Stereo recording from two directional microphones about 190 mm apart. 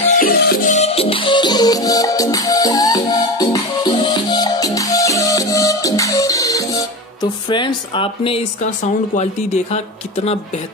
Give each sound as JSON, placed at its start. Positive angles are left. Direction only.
{"t": 0.0, "sound": "music", "side_deg": 50}
{"t": 9.1, "sound": "speech", "side_deg": 35}